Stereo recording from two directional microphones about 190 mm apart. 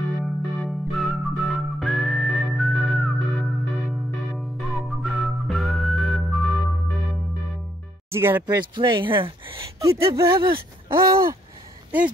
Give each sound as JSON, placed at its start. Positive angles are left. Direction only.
{"t": 0.2, "sound": "music", "side_deg": 0}
{"t": 4.4, "sound": "whistling", "side_deg": 0}
{"t": 8.1, "sound": "speech", "side_deg": -10}
{"t": 8.5, "sound": "speech", "side_deg": -25}